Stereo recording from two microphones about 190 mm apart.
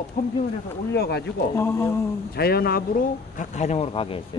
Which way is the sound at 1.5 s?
15° left (ahead or behind).